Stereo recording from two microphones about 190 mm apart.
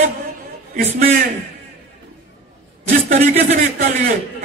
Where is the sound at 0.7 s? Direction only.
50° right (ahead or behind).